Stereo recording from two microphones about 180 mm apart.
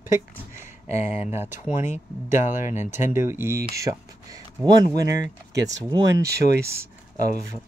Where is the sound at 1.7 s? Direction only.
15° right (ahead or behind).